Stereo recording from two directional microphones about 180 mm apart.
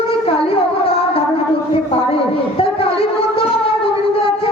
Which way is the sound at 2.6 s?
30° left (ahead or behind).